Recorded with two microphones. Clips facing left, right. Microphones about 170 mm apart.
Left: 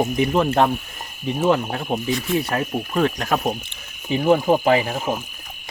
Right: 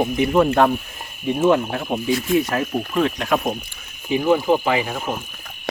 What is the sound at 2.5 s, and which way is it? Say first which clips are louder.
Speech: right 1 dB; 40° left (ahead or behind).